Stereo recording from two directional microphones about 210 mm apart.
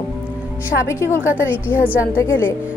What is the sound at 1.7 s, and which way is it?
Speech, 5° right (ahead or behind).